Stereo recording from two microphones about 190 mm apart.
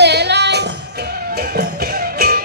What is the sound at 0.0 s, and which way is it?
Music, 60° right (ahead or behind).